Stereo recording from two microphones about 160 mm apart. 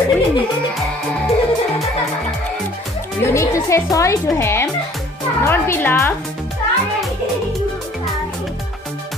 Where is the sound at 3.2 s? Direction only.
20° left (ahead or behind).